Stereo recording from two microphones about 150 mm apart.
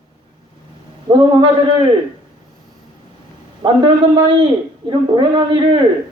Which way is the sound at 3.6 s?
35° right (ahead or behind).